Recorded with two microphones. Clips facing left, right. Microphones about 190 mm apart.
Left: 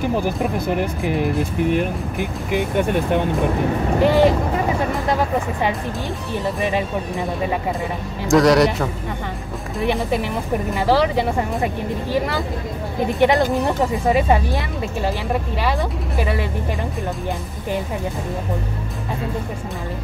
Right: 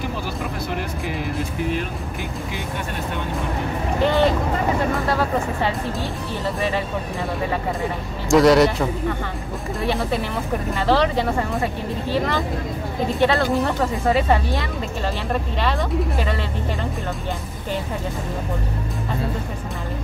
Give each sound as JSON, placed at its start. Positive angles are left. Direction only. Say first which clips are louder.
{"t": 4.0, "sound": "speech", "louder": "left 3 dB", "side_deg": 10}
{"t": 8.3, "sound": "a man's voice", "louder": "even", "side_deg": 0}
{"t": 9.8, "sound": "speech", "louder": "left 3 dB", "side_deg": 15}
{"t": 16.2, "sound": "speech", "louder": "left 2 dB", "side_deg": 10}